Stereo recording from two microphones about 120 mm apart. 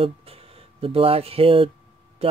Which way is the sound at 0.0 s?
50° right (ahead or behind).